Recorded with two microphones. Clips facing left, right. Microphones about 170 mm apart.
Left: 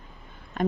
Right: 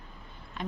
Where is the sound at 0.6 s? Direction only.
50° left (ahead or behind).